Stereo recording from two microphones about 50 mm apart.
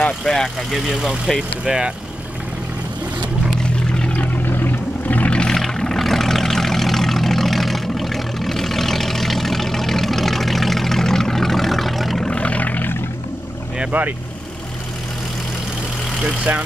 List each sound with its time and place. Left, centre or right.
0.2 s speech: centre
0.7 s speech: centre
1.6 s speech: centre
4.2 s vehicle: left
5.3 s vehicle: centre
5.6 s vehicle: centre
12.2 s vehicle: left
13.9 s speech: right
16.5 s speech: right